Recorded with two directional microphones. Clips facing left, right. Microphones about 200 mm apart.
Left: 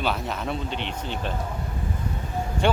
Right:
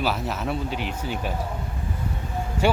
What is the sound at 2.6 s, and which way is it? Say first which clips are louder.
Speech: right 1 dB; 5° right (ahead or behind).